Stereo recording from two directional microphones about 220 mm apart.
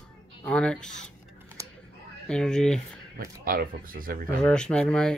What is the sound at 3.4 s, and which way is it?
Speech, 40° right (ahead or behind).